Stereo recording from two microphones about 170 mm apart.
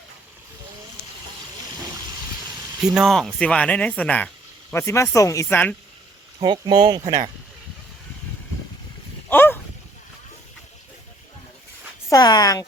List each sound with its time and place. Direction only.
2.8 s speech: 5° right (ahead or behind); by 5.7 s 10° left (ahead or behind)
6.4 s speech: 25° right (ahead or behind)
9.3 s a sound: 10° left (ahead or behind)
12.0 s speech: 20° left (ahead or behind)